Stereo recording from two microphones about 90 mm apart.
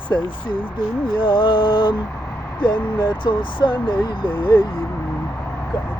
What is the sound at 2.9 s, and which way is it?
Speech, 70° left (ahead or behind).